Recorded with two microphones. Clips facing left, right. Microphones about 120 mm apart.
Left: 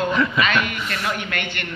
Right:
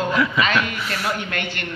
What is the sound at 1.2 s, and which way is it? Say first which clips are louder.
Speech: right 1 dB; 35° right (ahead or behind).